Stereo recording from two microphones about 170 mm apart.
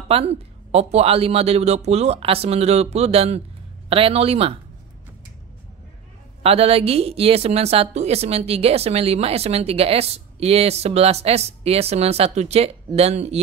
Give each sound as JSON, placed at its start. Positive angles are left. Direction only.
{"t": 0.1, "sound": "speech", "side_deg": -35}
{"t": 6.4, "sound": "speech", "side_deg": -35}